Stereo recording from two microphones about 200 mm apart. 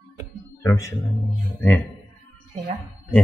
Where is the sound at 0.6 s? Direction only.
15° left (ahead or behind).